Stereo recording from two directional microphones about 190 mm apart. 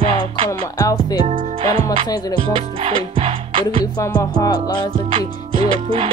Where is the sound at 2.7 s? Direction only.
30° right (ahead or behind).